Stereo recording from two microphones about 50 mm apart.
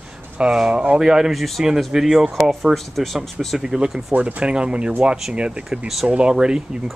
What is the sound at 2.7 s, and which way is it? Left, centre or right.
Speech, centre.